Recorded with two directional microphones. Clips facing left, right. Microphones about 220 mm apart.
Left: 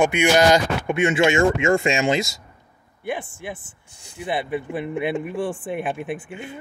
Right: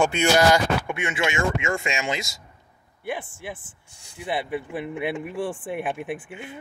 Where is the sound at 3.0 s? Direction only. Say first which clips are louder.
Left 3 dB; 5° right (ahead or behind).